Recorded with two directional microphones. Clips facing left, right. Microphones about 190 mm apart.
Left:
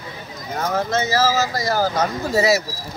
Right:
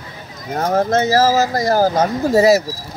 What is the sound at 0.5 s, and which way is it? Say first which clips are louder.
Bird: right 5 dB; 40° right (ahead or behind).